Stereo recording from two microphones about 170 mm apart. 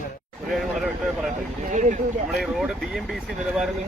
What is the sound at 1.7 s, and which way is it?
Speech, 45° right (ahead or behind).